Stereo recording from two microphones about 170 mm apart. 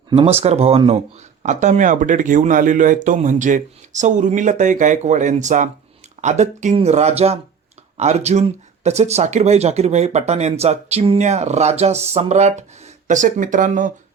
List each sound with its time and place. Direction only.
0.1 s speech: 35° right (ahead or behind); by 13.9 s 50° right (ahead or behind)